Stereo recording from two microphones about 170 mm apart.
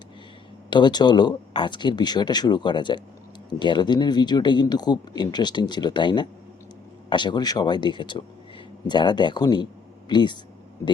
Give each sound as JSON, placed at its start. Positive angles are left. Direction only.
{"t": 0.7, "sound": "speech", "side_deg": 25}